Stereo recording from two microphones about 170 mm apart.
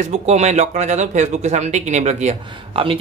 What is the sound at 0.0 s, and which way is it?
Speech, 40° right (ahead or behind).